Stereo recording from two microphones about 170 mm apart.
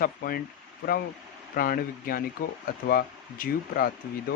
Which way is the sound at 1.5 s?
60° left (ahead or behind).